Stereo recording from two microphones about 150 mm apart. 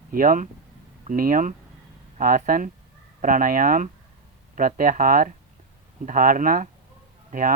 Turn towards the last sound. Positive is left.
turn(degrees=-65)  # may be behind; listen again after turning